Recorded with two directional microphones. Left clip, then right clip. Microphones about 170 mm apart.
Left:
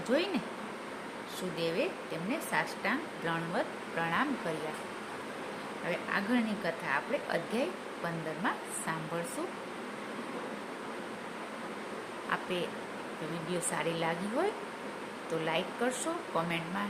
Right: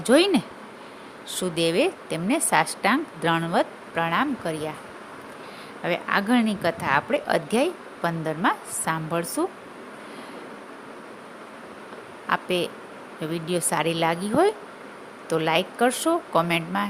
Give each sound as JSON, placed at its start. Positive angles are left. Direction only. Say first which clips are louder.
{"t": 0.0, "sound": "a woman's voice", "louder": "right 12 dB", "side_deg": -80}
{"t": 5.9, "sound": "a woman's voice", "louder": "right 10 dB", "side_deg": -75}
{"t": 12.3, "sound": "a woman's voice", "louder": "right 10 dB", "side_deg": -65}